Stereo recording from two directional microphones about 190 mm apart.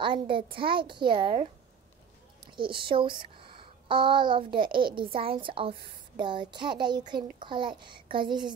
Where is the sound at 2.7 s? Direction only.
25° right (ahead or behind).